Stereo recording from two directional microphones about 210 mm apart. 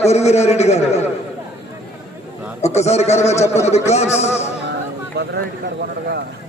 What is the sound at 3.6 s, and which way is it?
Speech, 30° left (ahead or behind).